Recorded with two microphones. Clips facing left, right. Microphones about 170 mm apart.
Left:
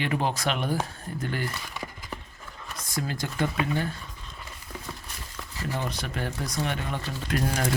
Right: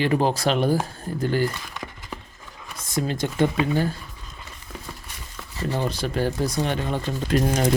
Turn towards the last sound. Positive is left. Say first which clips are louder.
# right 6 dB
turn(degrees=-25)  # may be behind; listen again after turning